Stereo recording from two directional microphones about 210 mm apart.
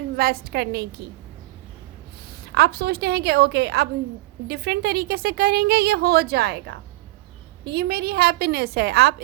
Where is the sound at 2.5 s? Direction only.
50° right (ahead or behind).